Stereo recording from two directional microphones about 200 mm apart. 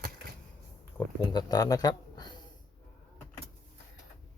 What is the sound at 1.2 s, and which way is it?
Speech, 20° left (ahead or behind).